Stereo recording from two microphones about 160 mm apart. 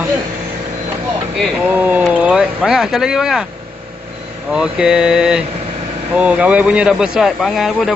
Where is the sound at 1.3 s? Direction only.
5° right (ahead or behind).